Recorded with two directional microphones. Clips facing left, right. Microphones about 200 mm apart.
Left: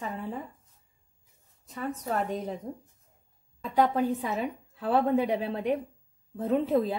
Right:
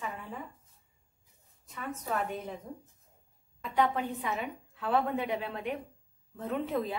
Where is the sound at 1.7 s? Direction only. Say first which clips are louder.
Left 4 dB; 35° left (ahead or behind).